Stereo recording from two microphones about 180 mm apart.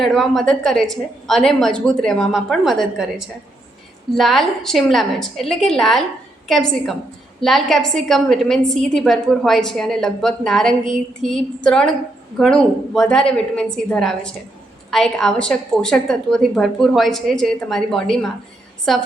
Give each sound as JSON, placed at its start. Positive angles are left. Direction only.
{"t": 0.0, "sound": "a woman's voice", "side_deg": 0}